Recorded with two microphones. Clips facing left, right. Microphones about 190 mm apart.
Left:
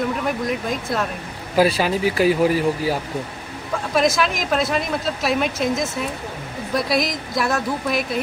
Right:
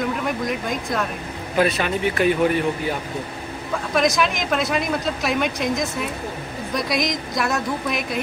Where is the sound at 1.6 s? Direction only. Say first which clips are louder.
Left 3 dB; 30° left (ahead or behind).